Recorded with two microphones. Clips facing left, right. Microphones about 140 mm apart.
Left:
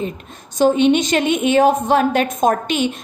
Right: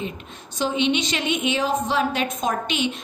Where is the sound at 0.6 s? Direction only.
45° left (ahead or behind).